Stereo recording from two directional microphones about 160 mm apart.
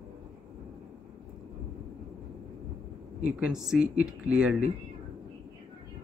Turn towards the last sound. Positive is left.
turn(degrees=-5)  # may be behind; listen again after turning